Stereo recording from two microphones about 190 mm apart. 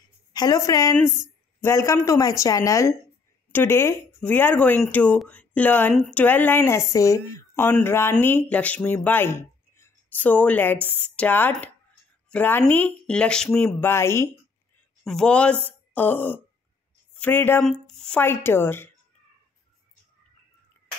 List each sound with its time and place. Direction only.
0.3 s speech: 20° left (ahead or behind)